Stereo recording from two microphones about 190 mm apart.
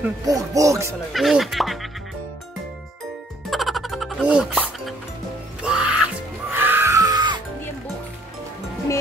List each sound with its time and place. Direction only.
0.2 s speech: 20° right (ahead or behind)
1.1 s speech: centre (ahead or behind)
3.4 s music: centre (ahead or behind); by 7.4 s 20° right (ahead or behind)